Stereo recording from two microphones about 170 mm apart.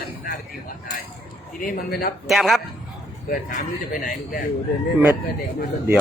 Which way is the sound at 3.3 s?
50° left (ahead or behind).